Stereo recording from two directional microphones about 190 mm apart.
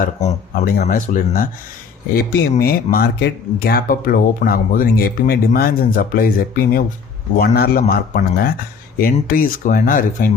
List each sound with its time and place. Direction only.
0.0 s speech: 40° left (ahead or behind)